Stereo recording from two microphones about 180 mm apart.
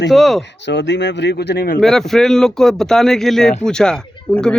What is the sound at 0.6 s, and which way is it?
Speech, 75° left (ahead or behind).